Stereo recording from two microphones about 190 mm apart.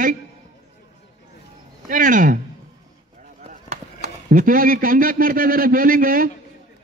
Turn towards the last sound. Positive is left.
turn(degrees=-50)  # may be behind; listen again after turning